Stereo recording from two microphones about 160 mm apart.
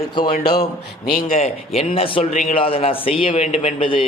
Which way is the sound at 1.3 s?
40° left (ahead or behind).